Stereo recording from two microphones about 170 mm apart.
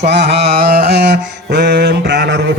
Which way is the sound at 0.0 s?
85° right.